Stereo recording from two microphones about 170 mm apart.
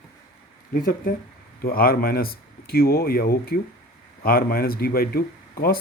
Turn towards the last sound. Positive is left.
turn(degrees=60)  # may be behind; listen again after turning